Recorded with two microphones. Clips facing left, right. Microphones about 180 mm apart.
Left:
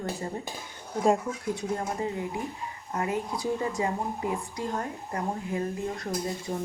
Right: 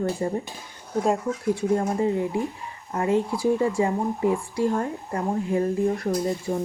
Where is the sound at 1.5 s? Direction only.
25° right (ahead or behind).